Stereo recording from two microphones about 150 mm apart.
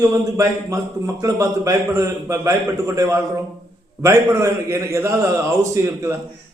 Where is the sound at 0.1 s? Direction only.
20° right (ahead or behind).